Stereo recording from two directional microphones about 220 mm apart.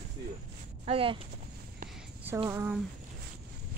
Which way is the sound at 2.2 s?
10° right (ahead or behind).